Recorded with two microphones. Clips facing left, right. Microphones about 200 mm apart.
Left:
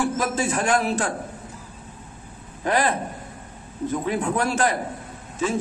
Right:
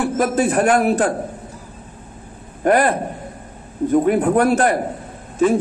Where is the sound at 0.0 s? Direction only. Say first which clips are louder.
Right 6 dB; 60° right (ahead or behind).